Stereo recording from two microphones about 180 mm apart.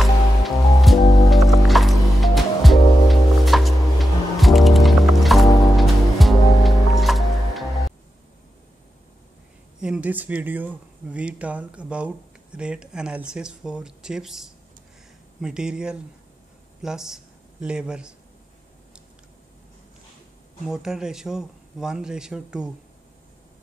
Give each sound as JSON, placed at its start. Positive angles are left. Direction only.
{"t": 0.0, "sound": "music", "side_deg": 0}
{"t": 9.8, "sound": "speech", "side_deg": -5}
{"t": 20.6, "sound": "speech", "side_deg": -5}